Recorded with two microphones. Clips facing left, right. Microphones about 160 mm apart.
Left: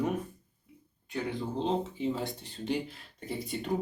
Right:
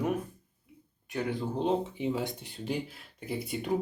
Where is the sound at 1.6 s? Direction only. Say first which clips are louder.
Right 1 dB; 15° right (ahead or behind).